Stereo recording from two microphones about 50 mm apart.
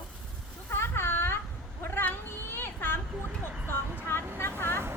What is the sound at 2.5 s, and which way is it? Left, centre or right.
Children playing, left.